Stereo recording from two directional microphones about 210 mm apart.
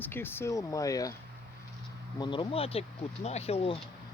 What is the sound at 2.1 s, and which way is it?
Speech, 20° left (ahead or behind).